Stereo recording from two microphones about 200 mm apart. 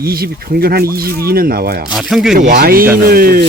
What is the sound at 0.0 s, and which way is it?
Speech, 50° right (ahead or behind).